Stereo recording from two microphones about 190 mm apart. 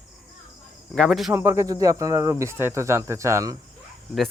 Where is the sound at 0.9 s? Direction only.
Centre (ahead or behind).